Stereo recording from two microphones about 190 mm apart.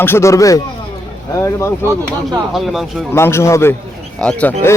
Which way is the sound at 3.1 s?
15° left (ahead or behind).